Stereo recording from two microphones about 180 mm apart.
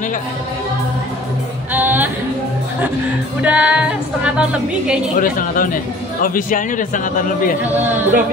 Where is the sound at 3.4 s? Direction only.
5° right (ahead or behind).